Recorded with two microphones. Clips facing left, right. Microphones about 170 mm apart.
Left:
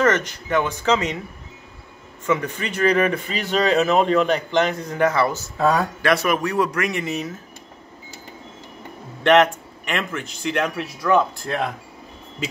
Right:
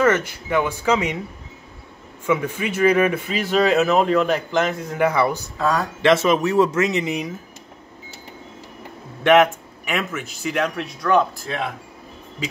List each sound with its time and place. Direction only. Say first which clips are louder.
0.0 s speech: right 1 dB; 10° right (ahead or behind)
2.2 s speech: right 1 dB; 10° right (ahead or behind)
9.2 s speech: right 1 dB; 5° right (ahead or behind)